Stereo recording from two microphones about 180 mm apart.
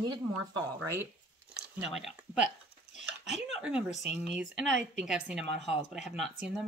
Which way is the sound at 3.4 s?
5° right (ahead or behind).